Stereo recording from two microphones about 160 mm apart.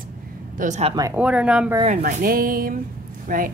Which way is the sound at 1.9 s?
45° right (ahead or behind).